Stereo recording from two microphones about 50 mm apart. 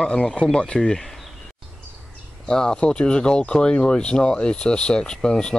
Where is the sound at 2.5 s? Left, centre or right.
Centre.